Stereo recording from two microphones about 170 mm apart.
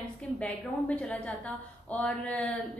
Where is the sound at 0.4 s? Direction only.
10° left (ahead or behind).